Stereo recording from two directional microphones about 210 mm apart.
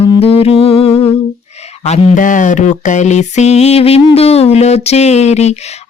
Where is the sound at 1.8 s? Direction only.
35° left (ahead or behind).